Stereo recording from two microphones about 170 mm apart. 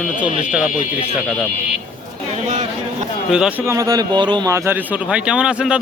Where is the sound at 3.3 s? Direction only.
5° right (ahead or behind).